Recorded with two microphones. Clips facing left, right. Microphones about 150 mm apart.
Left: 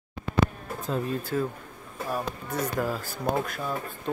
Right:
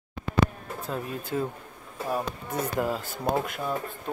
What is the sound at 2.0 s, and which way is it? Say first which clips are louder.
Speech: right 1 dB; 25° right (ahead or behind).